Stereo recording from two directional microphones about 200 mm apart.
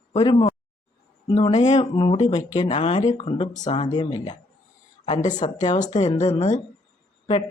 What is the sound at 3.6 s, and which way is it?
Speech, 35° left (ahead or behind).